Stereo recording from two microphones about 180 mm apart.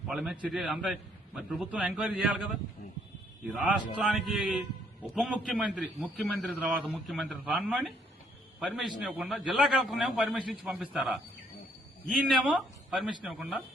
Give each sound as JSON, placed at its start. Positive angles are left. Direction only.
{"t": 0.1, "sound": "a man's voice", "side_deg": 0}